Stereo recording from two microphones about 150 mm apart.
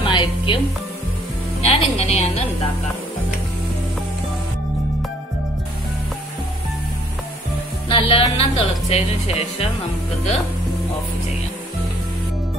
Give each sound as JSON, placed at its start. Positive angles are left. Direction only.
{"t": 0.0, "sound": "music", "side_deg": 35}
{"t": 1.6, "sound": "a woman's voice", "side_deg": 45}
{"t": 7.9, "sound": "speech", "side_deg": 40}